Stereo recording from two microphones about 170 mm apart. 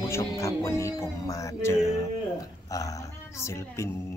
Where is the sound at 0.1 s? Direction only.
15° left (ahead or behind).